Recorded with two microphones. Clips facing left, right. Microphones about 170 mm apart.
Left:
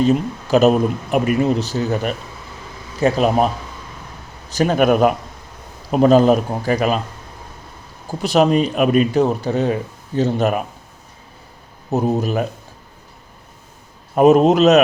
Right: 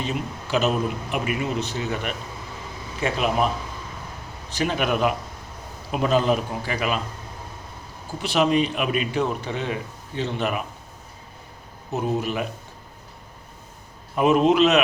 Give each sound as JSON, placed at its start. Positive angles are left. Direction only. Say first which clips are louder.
{"t": 0.0, "sound": "a man's voice", "louder": "left 12 dB", "side_deg": 45}
{"t": 8.2, "sound": "a man's voice", "louder": "left 5 dB", "side_deg": 40}
{"t": 11.9, "sound": "speech", "louder": "left 6 dB", "side_deg": 40}
{"t": 14.2, "sound": "speech", "louder": "left 6 dB", "side_deg": 40}